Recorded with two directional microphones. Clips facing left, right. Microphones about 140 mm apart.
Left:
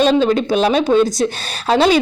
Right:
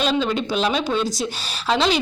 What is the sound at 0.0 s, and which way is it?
A woman's voice, 45° left (ahead or behind).